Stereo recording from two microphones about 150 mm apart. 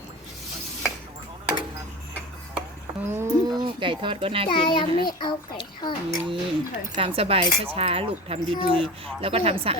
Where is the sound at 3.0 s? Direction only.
15° right (ahead or behind).